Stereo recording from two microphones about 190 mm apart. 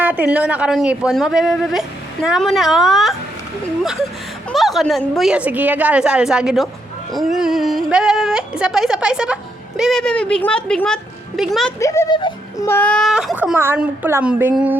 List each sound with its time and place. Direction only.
0.0 s speech: 10° right (ahead or behind)
4.5 s speech: centre (ahead or behind)
11.8 s a sound: 15° left (ahead or behind)
12.6 s speech: 10° left (ahead or behind); by 14.8 s 10° right (ahead or behind)